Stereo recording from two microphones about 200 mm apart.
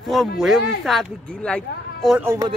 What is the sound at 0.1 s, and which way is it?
Speech, centre (ahead or behind).